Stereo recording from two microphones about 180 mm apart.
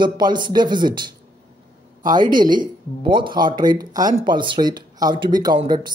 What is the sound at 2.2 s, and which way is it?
Speech, 50° right (ahead or behind).